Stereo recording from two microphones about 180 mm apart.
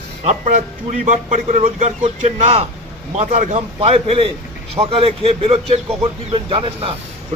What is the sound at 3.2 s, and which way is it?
Speech, 40° right (ahead or behind).